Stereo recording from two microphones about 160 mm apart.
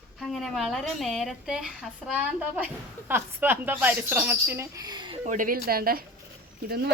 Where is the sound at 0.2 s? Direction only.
Centre (ahead or behind); by 5.2 s 30° right (ahead or behind).